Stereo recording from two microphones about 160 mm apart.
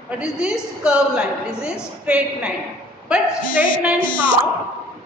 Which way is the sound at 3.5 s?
60° left (ahead or behind).